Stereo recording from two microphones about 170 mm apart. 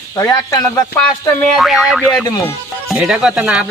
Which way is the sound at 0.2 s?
20° left (ahead or behind).